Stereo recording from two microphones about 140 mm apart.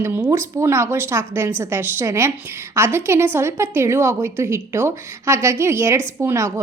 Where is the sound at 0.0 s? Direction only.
20° right (ahead or behind).